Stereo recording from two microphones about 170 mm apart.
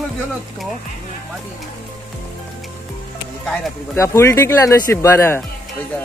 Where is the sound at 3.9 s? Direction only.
15° left (ahead or behind).